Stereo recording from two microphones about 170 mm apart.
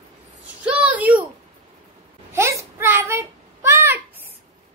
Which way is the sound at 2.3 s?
15° right (ahead or behind).